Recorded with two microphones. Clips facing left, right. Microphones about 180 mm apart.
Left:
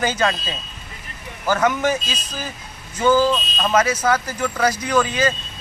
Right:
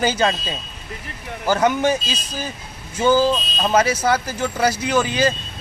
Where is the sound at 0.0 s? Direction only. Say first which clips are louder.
Right 1 dB; 30° right (ahead or behind).